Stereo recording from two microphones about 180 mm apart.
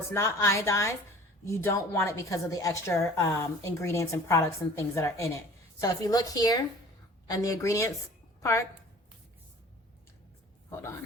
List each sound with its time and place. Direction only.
0.1 s a woman's voice: 15° left (ahead or behind)